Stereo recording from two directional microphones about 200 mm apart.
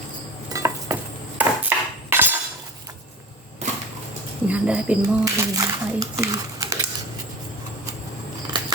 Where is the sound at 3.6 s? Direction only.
35° right (ahead or behind).